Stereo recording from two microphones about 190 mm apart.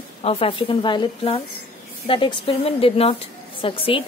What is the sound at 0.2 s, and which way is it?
A woman's voice, 30° left (ahead or behind).